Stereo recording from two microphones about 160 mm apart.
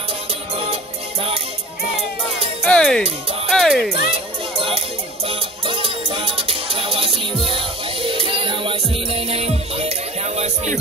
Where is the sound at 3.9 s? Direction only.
35° right (ahead or behind).